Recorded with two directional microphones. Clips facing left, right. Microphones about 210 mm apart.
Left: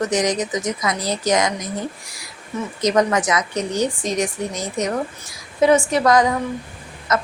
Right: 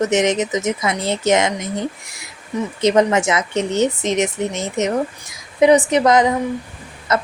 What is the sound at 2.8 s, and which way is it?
Speech, 25° right (ahead or behind).